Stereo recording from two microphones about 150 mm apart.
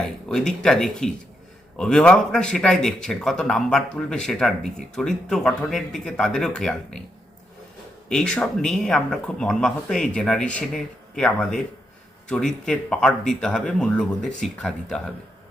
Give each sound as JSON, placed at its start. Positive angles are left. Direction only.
{"t": 0.3, "sound": "a man's voice", "side_deg": 5}
{"t": 8.1, "sound": "a man's voice", "side_deg": 5}